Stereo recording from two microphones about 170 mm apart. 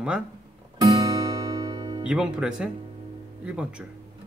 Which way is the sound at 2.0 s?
5° right (ahead or behind).